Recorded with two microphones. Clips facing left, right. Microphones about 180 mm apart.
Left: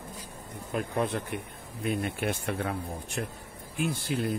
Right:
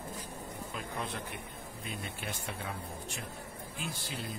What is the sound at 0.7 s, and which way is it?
Speech, 55° left (ahead or behind).